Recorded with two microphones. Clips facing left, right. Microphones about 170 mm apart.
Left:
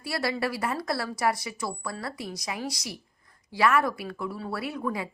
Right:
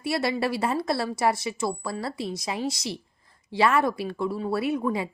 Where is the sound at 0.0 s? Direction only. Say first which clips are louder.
Right 3 dB; 25° right (ahead or behind).